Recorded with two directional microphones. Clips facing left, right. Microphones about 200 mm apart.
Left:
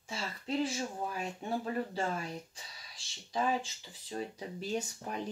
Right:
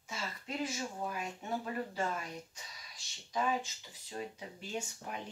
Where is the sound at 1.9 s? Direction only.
30° left (ahead or behind).